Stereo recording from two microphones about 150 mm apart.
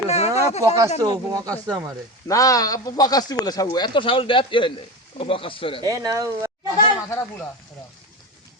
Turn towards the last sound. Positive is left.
turn(degrees=35)  # may be behind; listen again after turning